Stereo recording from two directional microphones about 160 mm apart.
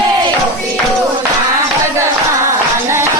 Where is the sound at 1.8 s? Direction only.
15° right (ahead or behind).